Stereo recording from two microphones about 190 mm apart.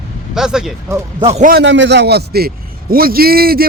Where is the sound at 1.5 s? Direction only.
60° right (ahead or behind).